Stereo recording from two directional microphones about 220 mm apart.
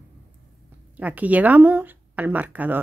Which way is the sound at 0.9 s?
5° right (ahead or behind).